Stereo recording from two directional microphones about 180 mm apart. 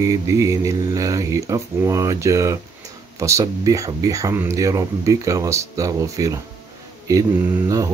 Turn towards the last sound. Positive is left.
turn(degrees=-20)  # may be behind; listen again after turning